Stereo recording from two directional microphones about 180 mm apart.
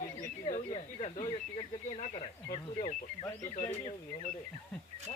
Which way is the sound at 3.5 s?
40° left (ahead or behind).